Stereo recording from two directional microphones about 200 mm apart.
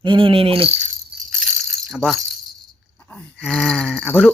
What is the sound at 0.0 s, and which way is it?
Insect, 25° right (ahead or behind).